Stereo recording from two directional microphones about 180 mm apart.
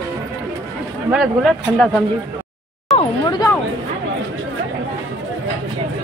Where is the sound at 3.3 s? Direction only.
20° left (ahead or behind).